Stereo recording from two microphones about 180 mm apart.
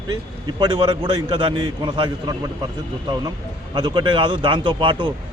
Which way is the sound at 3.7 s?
25° right (ahead or behind).